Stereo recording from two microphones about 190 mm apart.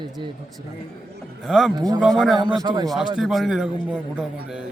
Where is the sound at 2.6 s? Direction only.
20° right (ahead or behind).